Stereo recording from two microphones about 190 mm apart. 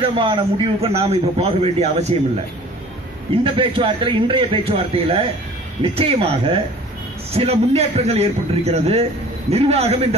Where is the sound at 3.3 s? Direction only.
30° right (ahead or behind).